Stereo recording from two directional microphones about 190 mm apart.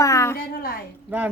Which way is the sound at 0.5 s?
50° left (ahead or behind).